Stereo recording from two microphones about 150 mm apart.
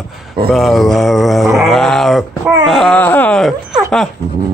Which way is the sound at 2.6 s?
5° left (ahead or behind).